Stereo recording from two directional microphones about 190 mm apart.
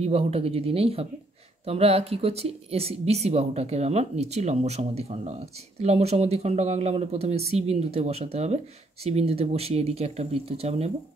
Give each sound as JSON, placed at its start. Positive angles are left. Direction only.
{"t": 0.0, "sound": "speech", "side_deg": -30}